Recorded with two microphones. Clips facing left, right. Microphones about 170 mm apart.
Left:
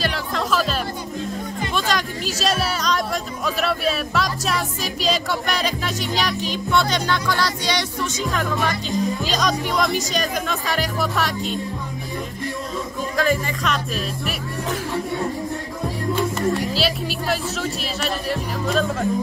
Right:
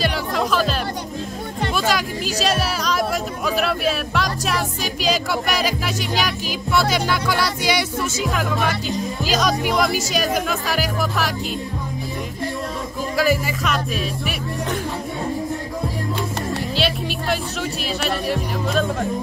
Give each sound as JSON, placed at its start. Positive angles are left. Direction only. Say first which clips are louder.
{"t": 0.0, "sound": "music", "louder": "right 3 dB", "side_deg": 0}
{"t": 1.8, "sound": "speech", "louder": "right 2 dB", "side_deg": -5}
{"t": 13.1, "sound": "speech", "louder": "right 2 dB", "side_deg": -5}
{"t": 16.7, "sound": "speech", "louder": "right 1 dB", "side_deg": 0}